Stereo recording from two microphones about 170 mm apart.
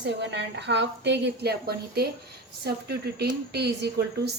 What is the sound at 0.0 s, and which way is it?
A woman's voice, 90° right.